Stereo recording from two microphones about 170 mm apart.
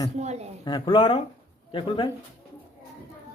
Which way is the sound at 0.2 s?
40° right (ahead or behind).